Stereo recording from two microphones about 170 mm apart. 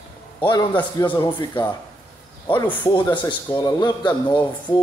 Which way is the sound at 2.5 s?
10° left (ahead or behind).